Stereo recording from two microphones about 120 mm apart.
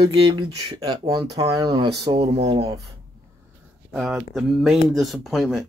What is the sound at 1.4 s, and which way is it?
Speech, 30° right (ahead or behind).